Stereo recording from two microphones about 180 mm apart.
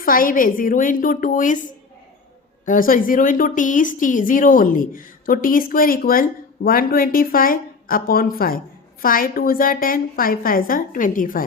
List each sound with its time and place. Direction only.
0.0 s a woman's voice: 50° left (ahead or behind)